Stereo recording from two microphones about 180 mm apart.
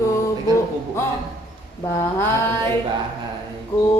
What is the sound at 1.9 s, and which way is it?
Mantra, 15° left (ahead or behind).